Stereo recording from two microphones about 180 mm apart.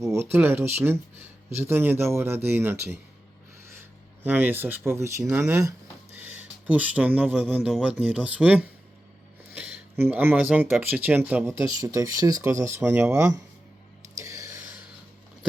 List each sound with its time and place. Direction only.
0.0 s a man's voice: 15° right (ahead or behind)
4.3 s a man's voice: 10° right (ahead or behind)
14.2 s a sound: 15° right (ahead or behind)